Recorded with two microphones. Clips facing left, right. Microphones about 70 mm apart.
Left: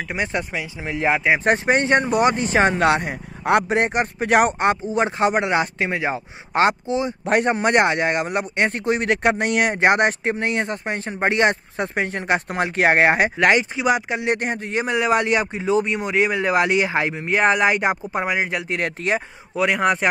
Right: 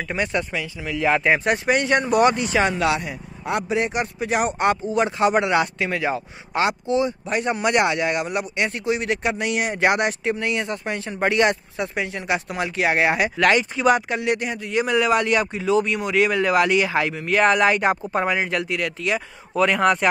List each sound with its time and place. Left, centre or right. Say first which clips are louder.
0.1 s a man's voice: right 1 dB; left
0.8 s speech: even; left
1.1 s speech: even; centre
1.4 s speech: left 2 dB; left
2.4 s speech: left 3 dB; left
4.3 s speech: left 7 dB; left
4.6 s a man's voice: even; left
7.4 s speech: even; left
9.8 s speech: left 1 dB; left
13.4 s speech: left 1 dB; left
14.2 s a man's voice: left 1 dB; left; by 18.7 s centre
18.7 s speech: left 1 dB; left
19.5 s speech: right 1 dB; centre